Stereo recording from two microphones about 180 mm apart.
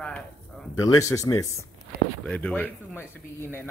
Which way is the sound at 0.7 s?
15° left (ahead or behind).